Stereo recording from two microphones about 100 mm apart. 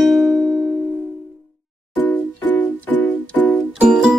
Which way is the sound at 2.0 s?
20° left (ahead or behind).